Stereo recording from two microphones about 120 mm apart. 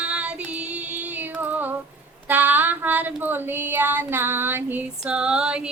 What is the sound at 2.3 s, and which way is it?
Female singing, 15° right (ahead or behind).